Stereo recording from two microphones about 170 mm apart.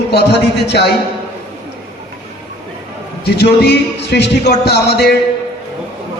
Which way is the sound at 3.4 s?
70° left (ahead or behind).